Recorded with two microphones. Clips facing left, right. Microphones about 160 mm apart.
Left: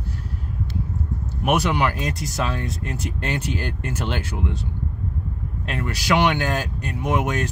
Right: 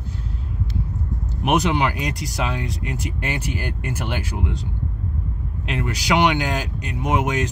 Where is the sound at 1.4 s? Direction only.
20° right (ahead or behind).